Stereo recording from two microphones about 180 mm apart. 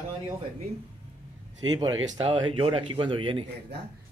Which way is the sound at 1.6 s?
20° right (ahead or behind).